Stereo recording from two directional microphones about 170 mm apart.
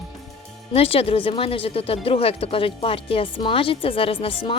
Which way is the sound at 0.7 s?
35° left (ahead or behind).